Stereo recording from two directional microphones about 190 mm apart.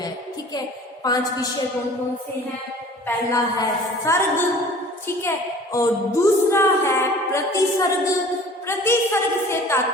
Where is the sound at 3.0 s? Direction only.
15° left (ahead or behind).